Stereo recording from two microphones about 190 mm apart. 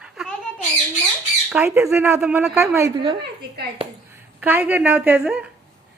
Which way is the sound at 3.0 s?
25° right (ahead or behind).